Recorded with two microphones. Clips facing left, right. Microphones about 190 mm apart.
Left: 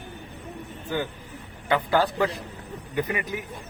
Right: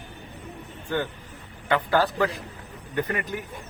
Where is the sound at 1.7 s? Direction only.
15° left (ahead or behind).